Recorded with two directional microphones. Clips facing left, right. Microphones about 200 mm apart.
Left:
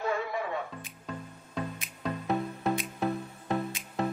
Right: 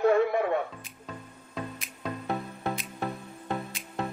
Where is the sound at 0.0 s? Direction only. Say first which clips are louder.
Right 9 dB; 55° right (ahead or behind).